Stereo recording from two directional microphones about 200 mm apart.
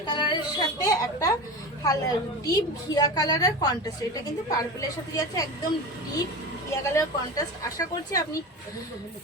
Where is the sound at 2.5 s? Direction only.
20° left (ahead or behind).